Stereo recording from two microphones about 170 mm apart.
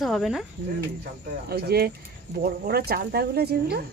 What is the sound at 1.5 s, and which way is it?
Speech, 65° right (ahead or behind).